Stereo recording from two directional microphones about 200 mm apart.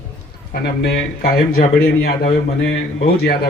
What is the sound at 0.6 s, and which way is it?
A man's voice, 55° left (ahead or behind).